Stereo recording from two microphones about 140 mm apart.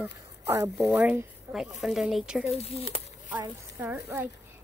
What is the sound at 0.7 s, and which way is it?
Speech, centre (ahead or behind).